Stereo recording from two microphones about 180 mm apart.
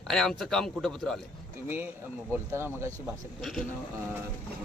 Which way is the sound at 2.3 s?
15° right (ahead or behind).